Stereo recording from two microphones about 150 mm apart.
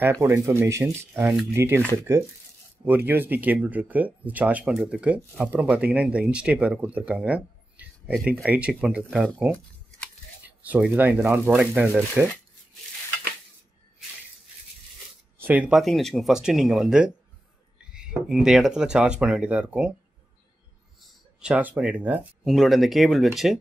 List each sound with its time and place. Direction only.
0.0 s speech: 15° right (ahead or behind)
2.8 s speech: 15° right (ahead or behind)
10.4 s speech: 10° right (ahead or behind)
15.3 s speech: 10° right (ahead or behind)
21.0 s speech: 5° right (ahead or behind)